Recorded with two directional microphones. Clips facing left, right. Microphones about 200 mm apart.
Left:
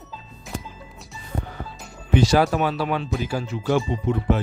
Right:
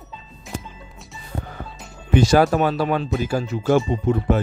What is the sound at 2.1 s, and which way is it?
Speech, 50° right (ahead or behind).